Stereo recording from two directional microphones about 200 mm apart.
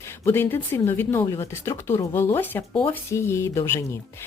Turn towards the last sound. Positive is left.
turn(degrees=15)  # may be behind; listen again after turning